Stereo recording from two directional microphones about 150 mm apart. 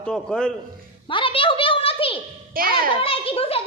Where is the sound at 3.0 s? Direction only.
40° left (ahead or behind).